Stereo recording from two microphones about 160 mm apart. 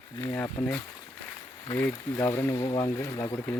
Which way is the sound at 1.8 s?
15° left (ahead or behind).